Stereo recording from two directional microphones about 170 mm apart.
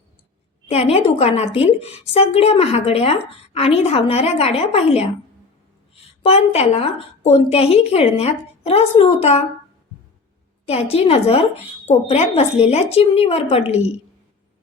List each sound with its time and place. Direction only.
0.7 s a woman's voice: 35° left (ahead or behind)
10.7 s a woman's voice: 35° left (ahead or behind)